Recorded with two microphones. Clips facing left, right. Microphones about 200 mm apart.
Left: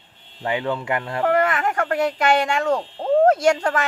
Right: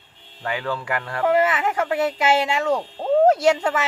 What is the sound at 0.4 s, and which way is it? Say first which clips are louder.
Speech: left 3 dB; 25° left (ahead or behind).